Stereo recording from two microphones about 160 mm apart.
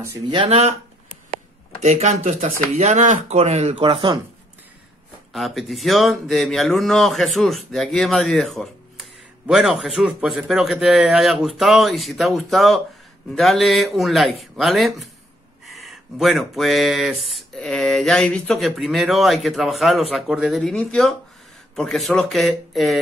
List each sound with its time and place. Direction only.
0.5 s speech: 40° right (ahead or behind)
1.8 s speech: 45° right (ahead or behind)
5.3 s speech: centre (ahead or behind)